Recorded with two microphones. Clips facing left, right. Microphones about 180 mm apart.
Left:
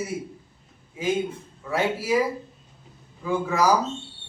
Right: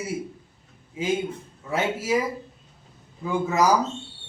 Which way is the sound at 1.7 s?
20° right (ahead or behind).